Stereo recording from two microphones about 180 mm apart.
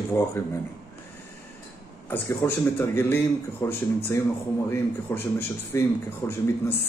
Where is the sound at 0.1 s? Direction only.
15° left (ahead or behind).